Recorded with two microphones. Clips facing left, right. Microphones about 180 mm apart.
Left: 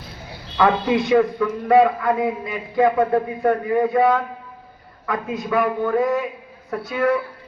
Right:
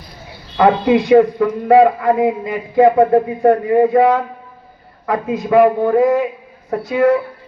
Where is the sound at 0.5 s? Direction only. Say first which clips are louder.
Right 6 dB; 35° right (ahead or behind).